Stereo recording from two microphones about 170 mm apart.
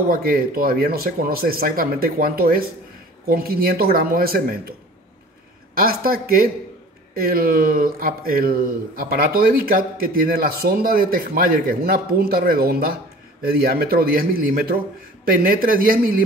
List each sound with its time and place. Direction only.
0.1 s a man's voice: 60° right (ahead or behind)
5.8 s a man's voice: 60° right (ahead or behind)